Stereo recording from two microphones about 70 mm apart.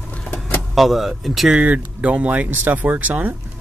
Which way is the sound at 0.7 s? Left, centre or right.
Centre.